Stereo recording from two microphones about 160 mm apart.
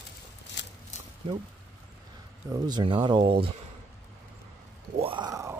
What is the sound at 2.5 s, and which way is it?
Speech, 25° right (ahead or behind).